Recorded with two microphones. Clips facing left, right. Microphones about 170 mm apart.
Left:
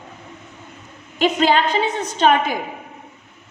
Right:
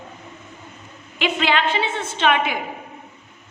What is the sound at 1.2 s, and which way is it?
A woman's voice, 40° left (ahead or behind).